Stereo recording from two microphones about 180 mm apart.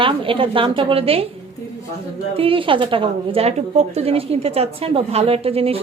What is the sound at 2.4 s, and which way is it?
A woman's voice, 30° right (ahead or behind).